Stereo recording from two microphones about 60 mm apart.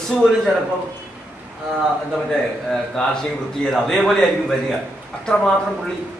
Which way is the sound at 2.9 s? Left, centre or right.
Centre.